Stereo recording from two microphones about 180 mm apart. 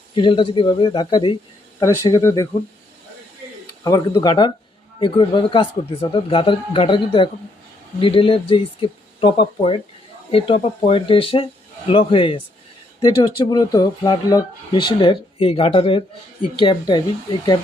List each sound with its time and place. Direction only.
0.1 s speech: 25° left (ahead or behind)
3.8 s a man's voice: 20° left (ahead or behind)